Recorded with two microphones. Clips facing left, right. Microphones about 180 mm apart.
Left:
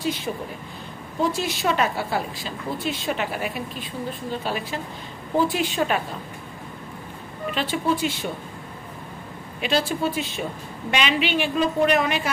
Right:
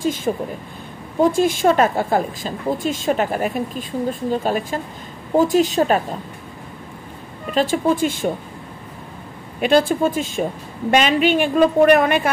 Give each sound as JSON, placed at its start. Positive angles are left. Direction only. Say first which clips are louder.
{"t": 0.0, "sound": "a woman's voice", "louder": "right 6 dB", "side_deg": -45}
{"t": 7.5, "sound": "a woman's voice", "louder": "right 7 dB", "side_deg": -45}
{"t": 9.6, "sound": "a woman's voice", "louder": "right 8 dB", "side_deg": -50}